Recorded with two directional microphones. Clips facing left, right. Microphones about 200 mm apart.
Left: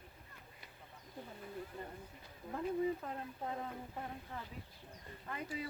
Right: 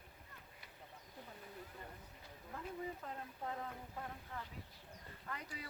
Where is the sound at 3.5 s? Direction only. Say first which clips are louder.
Left 2 dB; 20° left (ahead or behind).